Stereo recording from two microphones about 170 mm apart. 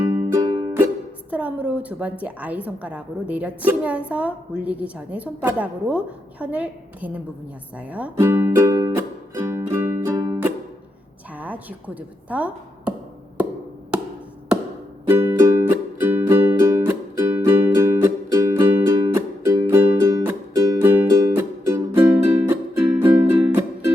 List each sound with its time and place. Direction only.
0.3 s music: 20° right (ahead or behind)
1.3 s a woman's voice: 10° right (ahead or behind)
7.8 s music: 10° right (ahead or behind)
11.3 s chopping: 10° right (ahead or behind)
15.0 s music: 15° right (ahead or behind)